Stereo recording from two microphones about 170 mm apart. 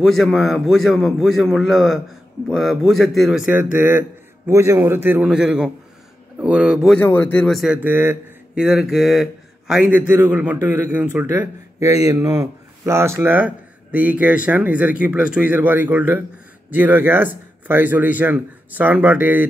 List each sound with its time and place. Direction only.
0.0 s a man's voice: centre (ahead or behind)
7.0 s a man's voice: 10° left (ahead or behind); by 8.6 s 10° right (ahead or behind)
8.6 s a man's voice: centre (ahead or behind)